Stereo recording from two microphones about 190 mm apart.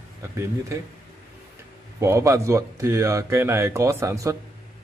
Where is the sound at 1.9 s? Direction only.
15° right (ahead or behind).